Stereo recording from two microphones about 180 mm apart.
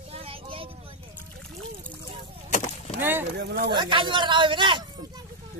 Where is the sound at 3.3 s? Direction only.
60° right (ahead or behind).